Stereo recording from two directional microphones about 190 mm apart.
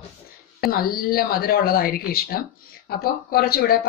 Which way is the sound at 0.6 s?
50° left (ahead or behind).